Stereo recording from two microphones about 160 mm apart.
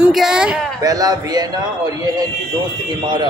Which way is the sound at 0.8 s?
20° right (ahead or behind).